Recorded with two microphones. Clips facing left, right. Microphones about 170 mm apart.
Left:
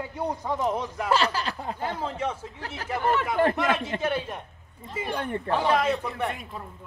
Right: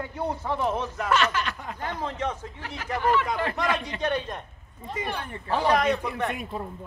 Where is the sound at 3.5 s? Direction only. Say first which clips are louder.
Left 2 dB; 5° left (ahead or behind).